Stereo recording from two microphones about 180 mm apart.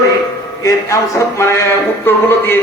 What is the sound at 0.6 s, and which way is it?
A man's voice, 20° left (ahead or behind).